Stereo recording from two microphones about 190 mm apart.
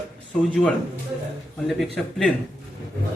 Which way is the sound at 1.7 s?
Centre (ahead or behind).